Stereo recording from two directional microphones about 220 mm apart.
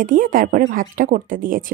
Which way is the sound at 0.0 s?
40° right (ahead or behind).